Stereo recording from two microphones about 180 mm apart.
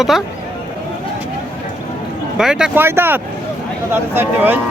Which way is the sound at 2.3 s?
5° right (ahead or behind).